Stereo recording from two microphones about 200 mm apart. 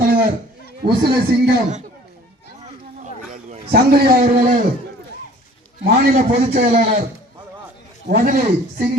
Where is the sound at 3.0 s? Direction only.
35° right (ahead or behind).